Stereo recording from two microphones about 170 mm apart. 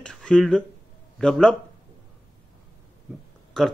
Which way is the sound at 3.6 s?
5° left (ahead or behind).